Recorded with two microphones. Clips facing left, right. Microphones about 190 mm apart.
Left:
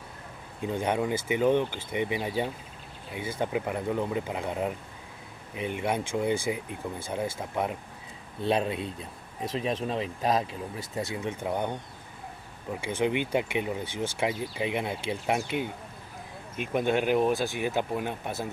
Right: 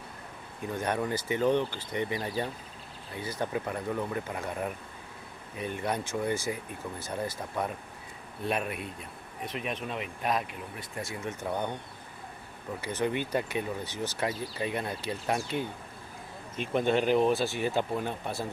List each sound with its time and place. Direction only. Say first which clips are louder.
0.6 s speech: left 3 dB; 15° left (ahead or behind)
11.4 s speech: left 2 dB; 15° left (ahead or behind)
13.0 s speech: left 3 dB; 15° left (ahead or behind)